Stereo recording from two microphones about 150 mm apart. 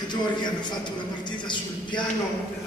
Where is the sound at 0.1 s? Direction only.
30° left (ahead or behind).